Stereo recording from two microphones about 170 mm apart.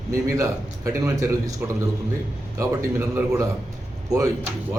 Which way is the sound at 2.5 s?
20° right (ahead or behind).